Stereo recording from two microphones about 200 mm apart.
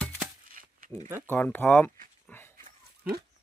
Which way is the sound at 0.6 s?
45° right (ahead or behind).